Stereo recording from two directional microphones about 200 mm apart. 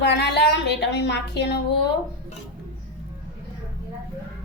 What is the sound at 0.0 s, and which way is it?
Speech, 60° left (ahead or behind).